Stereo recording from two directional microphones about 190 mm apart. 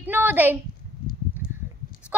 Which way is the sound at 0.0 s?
10° right (ahead or behind).